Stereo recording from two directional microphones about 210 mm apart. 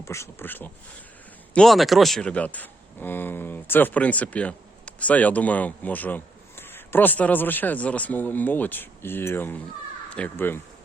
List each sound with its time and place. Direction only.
0.0 s speech: 15° left (ahead or behind)